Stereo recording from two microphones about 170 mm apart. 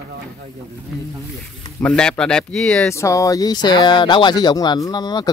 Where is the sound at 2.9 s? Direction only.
15° left (ahead or behind).